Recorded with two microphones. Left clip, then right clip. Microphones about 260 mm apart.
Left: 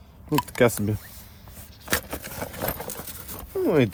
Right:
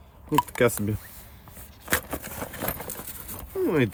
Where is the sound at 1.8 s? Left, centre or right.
Centre.